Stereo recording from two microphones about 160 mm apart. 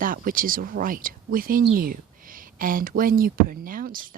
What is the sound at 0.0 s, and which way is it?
Speech, 60° right (ahead or behind).